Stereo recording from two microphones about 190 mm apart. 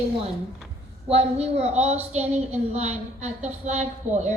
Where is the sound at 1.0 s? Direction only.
30° right (ahead or behind).